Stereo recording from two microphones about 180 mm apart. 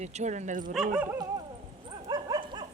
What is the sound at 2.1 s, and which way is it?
Dog, 25° right (ahead or behind).